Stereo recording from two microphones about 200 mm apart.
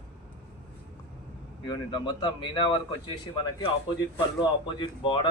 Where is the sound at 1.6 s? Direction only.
20° left (ahead or behind).